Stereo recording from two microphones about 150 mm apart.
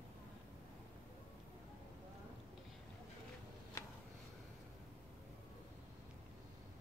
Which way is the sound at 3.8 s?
20° left (ahead or behind).